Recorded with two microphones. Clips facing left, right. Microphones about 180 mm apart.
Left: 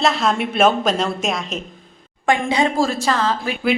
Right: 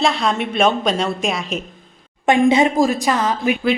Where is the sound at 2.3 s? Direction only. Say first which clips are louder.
Right 4 dB; 20° right (ahead or behind).